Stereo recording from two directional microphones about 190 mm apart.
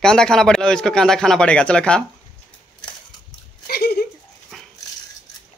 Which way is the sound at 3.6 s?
55° left (ahead or behind).